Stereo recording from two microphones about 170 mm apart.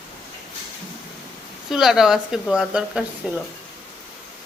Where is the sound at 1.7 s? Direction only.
Centre (ahead or behind).